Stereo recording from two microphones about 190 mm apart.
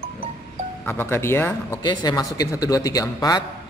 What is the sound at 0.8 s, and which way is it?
A man's voice, 10° left (ahead or behind).